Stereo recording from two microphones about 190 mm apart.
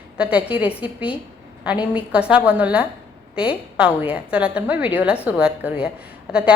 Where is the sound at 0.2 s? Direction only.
5° right (ahead or behind).